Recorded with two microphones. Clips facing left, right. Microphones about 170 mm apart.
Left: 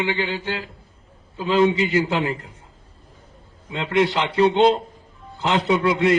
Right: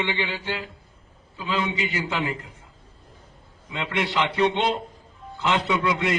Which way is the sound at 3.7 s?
35° left (ahead or behind).